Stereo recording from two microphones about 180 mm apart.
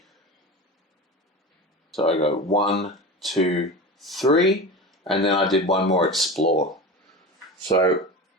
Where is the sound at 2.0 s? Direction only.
35° left (ahead or behind).